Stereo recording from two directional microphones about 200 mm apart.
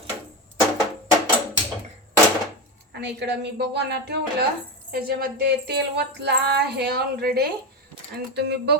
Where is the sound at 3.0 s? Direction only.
55° right (ahead or behind).